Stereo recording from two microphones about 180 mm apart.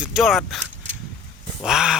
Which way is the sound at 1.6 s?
Centre (ahead or behind).